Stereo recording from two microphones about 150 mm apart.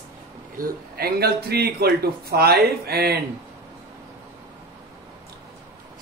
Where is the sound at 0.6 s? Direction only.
90° right.